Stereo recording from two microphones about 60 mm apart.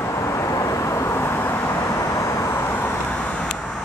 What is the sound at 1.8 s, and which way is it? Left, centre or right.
Vehicle, left.